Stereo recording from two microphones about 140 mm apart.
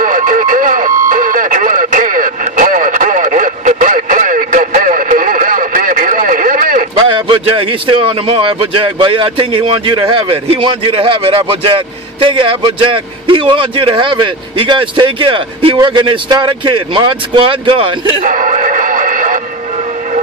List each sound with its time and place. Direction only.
0.0 s radio: 75° right (ahead or behind)
7.2 s a man's voice: 35° right (ahead or behind)
18.2 s radio: 70° right (ahead or behind)